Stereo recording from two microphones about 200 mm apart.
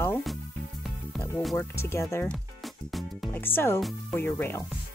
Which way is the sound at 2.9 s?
Centre (ahead or behind).